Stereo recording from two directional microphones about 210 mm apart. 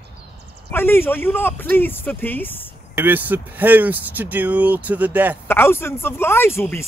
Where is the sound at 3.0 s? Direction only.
10° right (ahead or behind).